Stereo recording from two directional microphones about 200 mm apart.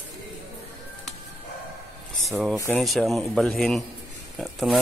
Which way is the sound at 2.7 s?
Centre (ahead or behind).